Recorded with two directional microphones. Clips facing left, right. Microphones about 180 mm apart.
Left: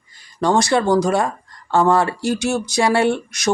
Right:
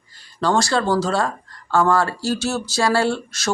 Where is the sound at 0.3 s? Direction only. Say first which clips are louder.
Left 3 dB; 15° left (ahead or behind).